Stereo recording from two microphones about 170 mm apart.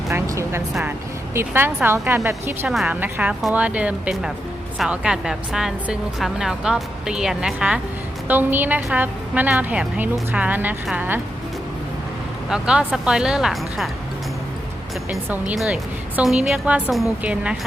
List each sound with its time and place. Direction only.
0.1 s a woman's voice: 15° right (ahead or behind)
0.7 s a woman's voice: 5° right (ahead or behind)
1.3 s a woman's voice: 15° right (ahead or behind)
12.5 s a woman's voice: 5° right (ahead or behind)
15.1 s a woman's voice: 5° right (ahead or behind)